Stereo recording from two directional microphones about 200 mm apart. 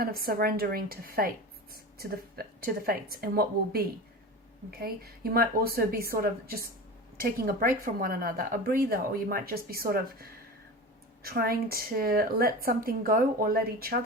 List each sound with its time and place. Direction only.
0.0 s a woman's voice: 45° right (ahead or behind)
2.6 s a woman's voice: 50° right (ahead or behind)